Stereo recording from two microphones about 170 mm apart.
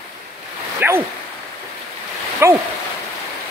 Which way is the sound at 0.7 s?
15° right (ahead or behind).